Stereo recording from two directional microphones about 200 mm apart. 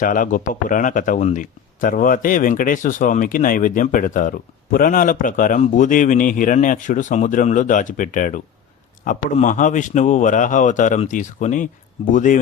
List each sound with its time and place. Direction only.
0.0 s speech: 40° left (ahead or behind)